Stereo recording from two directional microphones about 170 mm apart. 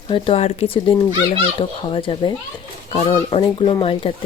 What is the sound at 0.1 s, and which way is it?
Speech, 35° left (ahead or behind).